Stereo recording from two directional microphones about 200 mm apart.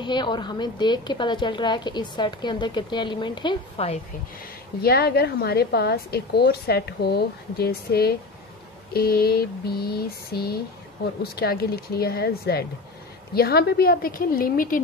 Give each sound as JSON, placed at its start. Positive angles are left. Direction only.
{"t": 0.0, "sound": "a woman's voice", "side_deg": 20}
{"t": 4.8, "sound": "a woman's voice", "side_deg": 50}